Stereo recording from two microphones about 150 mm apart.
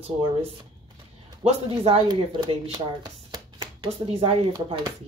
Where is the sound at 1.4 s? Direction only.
45° right (ahead or behind).